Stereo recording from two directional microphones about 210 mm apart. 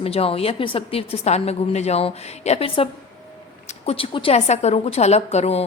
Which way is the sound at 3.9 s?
25° left (ahead or behind).